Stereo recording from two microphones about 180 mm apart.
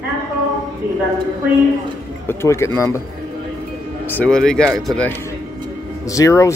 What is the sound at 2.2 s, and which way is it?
Speech, 15° left (ahead or behind).